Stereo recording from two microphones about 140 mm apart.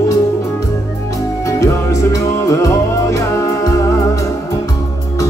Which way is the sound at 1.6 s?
20° left (ahead or behind).